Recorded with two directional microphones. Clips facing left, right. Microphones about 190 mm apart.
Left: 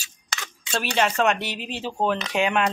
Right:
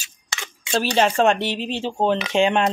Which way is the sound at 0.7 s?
30° right (ahead or behind).